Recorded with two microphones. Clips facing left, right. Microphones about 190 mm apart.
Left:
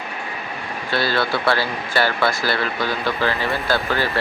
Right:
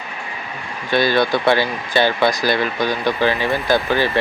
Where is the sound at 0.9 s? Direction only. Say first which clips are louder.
Right 5 dB; 15° right (ahead or behind).